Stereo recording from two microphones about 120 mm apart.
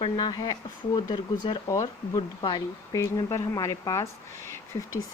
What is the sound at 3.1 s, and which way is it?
Speech, 25° left (ahead or behind).